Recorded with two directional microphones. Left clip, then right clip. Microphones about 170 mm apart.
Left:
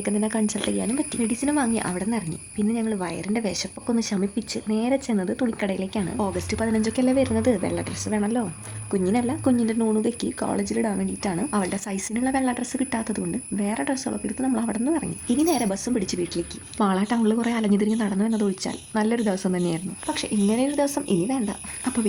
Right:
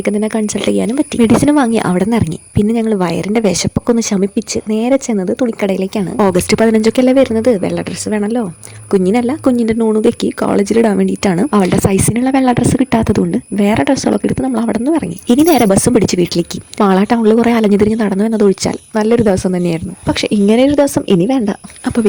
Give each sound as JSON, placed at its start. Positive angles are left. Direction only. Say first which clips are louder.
{"t": 0.0, "sound": "a woman's voice", "louder": "right 10 dB", "side_deg": -40}
{"t": 1.2, "sound": "a woman's voice", "louder": "right 15 dB", "side_deg": -55}
{"t": 8.9, "sound": "speech", "louder": "right 11 dB", "side_deg": -45}